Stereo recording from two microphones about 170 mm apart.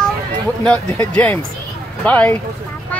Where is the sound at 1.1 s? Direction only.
10° left (ahead or behind).